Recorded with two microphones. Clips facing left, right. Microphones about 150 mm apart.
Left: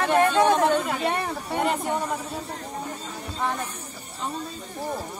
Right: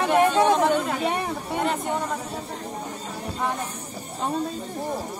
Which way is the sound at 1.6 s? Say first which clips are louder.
Left 1 dB; 5° left (ahead or behind).